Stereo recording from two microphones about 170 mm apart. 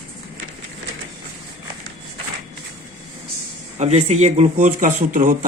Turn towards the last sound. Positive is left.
turn(degrees=-50)  # may be behind; listen again after turning